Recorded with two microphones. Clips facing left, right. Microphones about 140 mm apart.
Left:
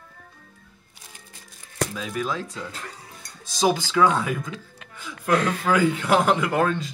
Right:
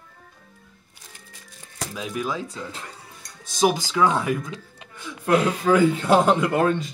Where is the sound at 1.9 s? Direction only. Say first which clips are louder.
Even; 15° right (ahead or behind).